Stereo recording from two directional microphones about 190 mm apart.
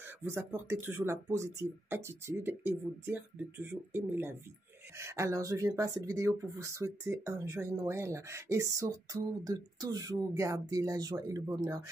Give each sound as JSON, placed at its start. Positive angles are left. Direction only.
{"t": 0.2, "sound": "speech", "side_deg": -15}